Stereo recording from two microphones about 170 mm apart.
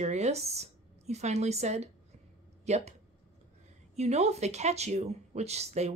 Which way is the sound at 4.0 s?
40° right (ahead or behind).